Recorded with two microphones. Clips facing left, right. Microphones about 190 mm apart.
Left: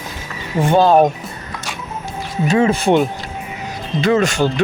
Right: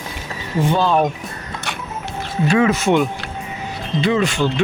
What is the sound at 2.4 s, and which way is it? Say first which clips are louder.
Speech: left 1 dB; 25° left (ahead or behind).